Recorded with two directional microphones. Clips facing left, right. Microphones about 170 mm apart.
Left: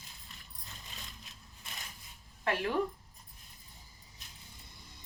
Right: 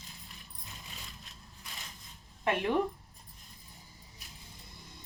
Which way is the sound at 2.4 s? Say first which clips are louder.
Right 3 dB; 20° right (ahead or behind).